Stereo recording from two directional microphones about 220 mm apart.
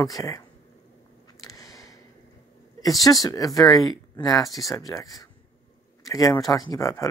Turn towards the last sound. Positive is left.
turn(degrees=15)  # may be behind; listen again after turning